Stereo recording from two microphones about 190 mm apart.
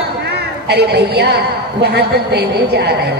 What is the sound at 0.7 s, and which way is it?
Speech, 60° right (ahead or behind).